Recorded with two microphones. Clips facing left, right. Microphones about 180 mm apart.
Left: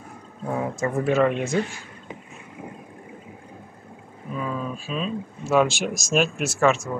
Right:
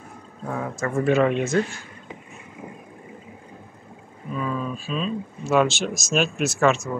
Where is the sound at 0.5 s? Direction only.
20° left (ahead or behind).